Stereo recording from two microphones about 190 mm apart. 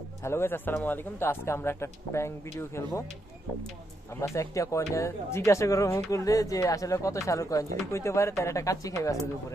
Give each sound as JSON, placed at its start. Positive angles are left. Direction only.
{"t": 0.2, "sound": "speech", "side_deg": 15}
{"t": 4.1, "sound": "speech", "side_deg": 15}